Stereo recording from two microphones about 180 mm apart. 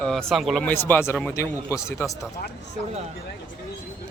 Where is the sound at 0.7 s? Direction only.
10° left (ahead or behind).